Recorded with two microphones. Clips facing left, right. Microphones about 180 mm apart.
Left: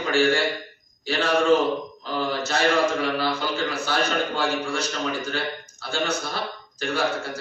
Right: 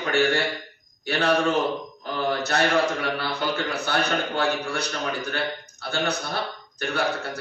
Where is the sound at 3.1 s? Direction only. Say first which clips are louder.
Left 2 dB; 65° right (ahead or behind).